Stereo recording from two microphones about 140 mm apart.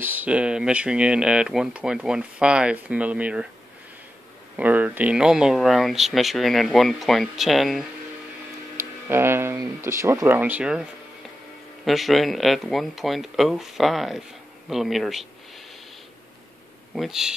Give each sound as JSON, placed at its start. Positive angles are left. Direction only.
{"t": 0.0, "sound": "speech", "side_deg": -10}
{"t": 4.6, "sound": "speech", "side_deg": -10}
{"t": 9.0, "sound": "speech", "side_deg": -15}
{"t": 16.9, "sound": "speech", "side_deg": 0}